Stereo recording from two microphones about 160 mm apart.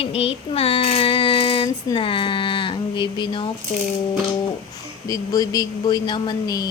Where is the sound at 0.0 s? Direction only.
35° left (ahead or behind).